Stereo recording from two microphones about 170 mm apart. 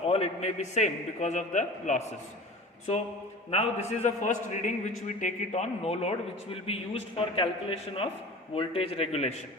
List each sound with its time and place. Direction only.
0.1 s a man's voice: 40° left (ahead or behind)
3.5 s a man's voice: 40° left (ahead or behind)